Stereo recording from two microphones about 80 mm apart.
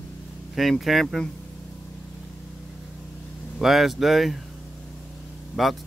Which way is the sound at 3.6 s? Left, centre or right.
Centre.